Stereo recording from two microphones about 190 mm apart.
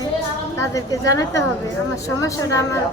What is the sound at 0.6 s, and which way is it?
A woman's voice, 15° left (ahead or behind).